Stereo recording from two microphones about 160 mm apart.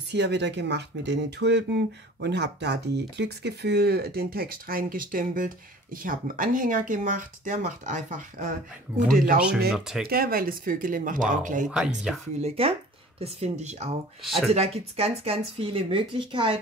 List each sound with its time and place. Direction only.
0.1 s speech: 90° right; by 9.4 s 60° right (ahead or behind)
9.8 s speech: 5° right (ahead or behind)
10.0 s speech: 70° right (ahead or behind); by 11.7 s 55° right (ahead or behind)
12.4 s speech: 40° right (ahead or behind)
14.2 s speech: centre (ahead or behind)
14.5 s speech: 40° right (ahead or behind)